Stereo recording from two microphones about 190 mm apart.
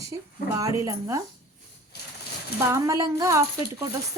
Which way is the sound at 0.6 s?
15° right (ahead or behind).